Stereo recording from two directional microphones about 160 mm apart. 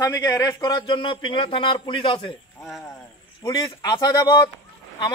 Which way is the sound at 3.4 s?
20° left (ahead or behind).